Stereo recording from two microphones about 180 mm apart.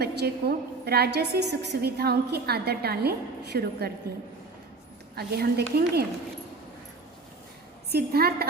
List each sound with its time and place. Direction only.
0.0 s a woman's voice: 60° right (ahead or behind)
5.1 s a woman's voice: 60° right (ahead or behind)
7.9 s a woman's voice: 60° right (ahead or behind)